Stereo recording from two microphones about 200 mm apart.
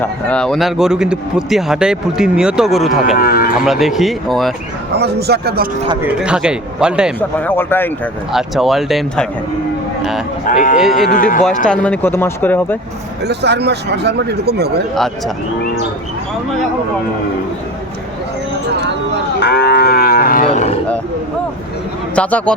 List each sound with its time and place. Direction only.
0.3 s speech: 5° left (ahead or behind)
3.2 s speech: 45° left (ahead or behind)
3.6 s speech: centre (ahead or behind)
4.9 s speech: 55° right (ahead or behind)
6.0 s speech: 5° right (ahead or behind)
7.2 s speech: 10° left (ahead or behind)
8.3 s speech: centre (ahead or behind)
10.4 s speech: 45° left (ahead or behind)
10.8 s speech: centre (ahead or behind)
11.1 s speech: 45° left (ahead or behind)
11.6 s speech: 5° left (ahead or behind)
13.2 s speech: 55° right (ahead or behind)
19.4 s cattle: 55° left (ahead or behind)
22.1 s speech: 5° left (ahead or behind)